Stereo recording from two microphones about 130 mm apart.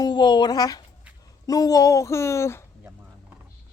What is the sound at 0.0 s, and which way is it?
Speech, 35° left (ahead or behind).